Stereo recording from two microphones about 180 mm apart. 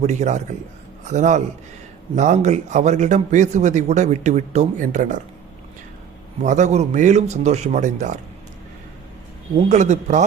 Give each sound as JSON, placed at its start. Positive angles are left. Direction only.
{"t": 0.0, "sound": "a man's voice", "side_deg": -40}
{"t": 6.4, "sound": "a man's voice", "side_deg": -40}
{"t": 9.6, "sound": "a man's voice", "side_deg": -40}